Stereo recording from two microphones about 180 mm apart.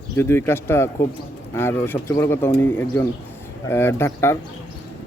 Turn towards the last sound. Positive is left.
turn(degrees=15)  # may be behind; listen again after turning